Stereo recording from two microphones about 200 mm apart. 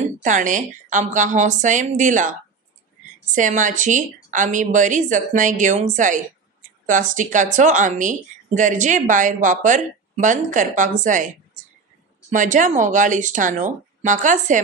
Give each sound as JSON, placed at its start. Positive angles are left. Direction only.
{"t": 0.0, "sound": "speech", "side_deg": -40}